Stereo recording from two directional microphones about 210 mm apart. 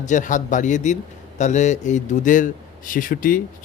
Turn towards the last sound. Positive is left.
turn(degrees=40)  # may be behind; listen again after turning